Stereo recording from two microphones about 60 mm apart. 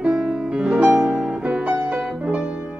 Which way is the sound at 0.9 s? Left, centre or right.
Centre.